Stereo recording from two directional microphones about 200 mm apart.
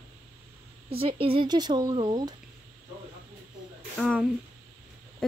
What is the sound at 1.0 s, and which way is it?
Speech, 30° right (ahead or behind).